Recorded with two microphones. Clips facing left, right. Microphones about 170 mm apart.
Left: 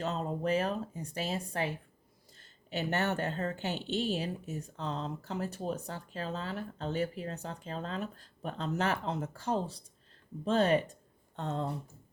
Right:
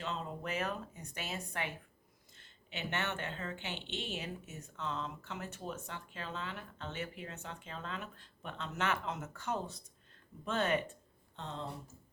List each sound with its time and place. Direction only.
0.0 s a woman's voice: 40° left (ahead or behind)
11.3 s speech: 50° left (ahead or behind)